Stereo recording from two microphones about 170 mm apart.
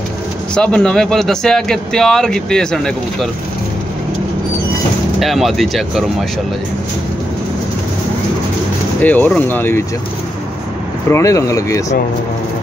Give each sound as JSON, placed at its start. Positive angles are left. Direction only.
{"t": 0.6, "sound": "speech", "side_deg": 5}
{"t": 5.2, "sound": "speech", "side_deg": 0}
{"t": 9.0, "sound": "speech", "side_deg": 10}
{"t": 11.1, "sound": "speech", "side_deg": 15}